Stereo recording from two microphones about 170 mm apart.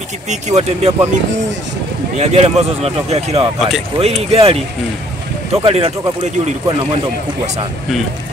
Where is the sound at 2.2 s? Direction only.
40° right (ahead or behind).